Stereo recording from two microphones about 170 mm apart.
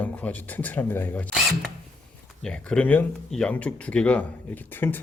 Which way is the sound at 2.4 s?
5° left (ahead or behind).